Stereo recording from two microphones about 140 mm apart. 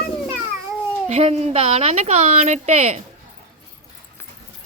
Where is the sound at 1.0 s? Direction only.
50° right (ahead or behind).